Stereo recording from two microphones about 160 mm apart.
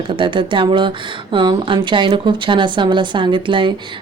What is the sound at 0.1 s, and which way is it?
A woman's voice, 30° right (ahead or behind).